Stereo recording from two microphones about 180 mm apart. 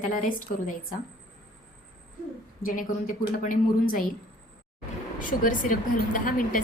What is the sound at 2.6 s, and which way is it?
Speech, 50° left (ahead or behind).